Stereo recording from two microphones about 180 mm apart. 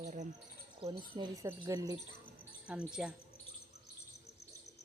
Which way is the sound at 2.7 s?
5° right (ahead or behind).